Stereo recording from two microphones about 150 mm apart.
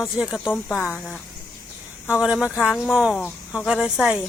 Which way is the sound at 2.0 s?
10° right (ahead or behind).